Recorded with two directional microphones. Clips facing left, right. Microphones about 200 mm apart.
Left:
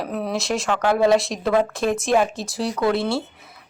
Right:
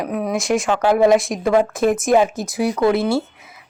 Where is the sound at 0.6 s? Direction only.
15° right (ahead or behind).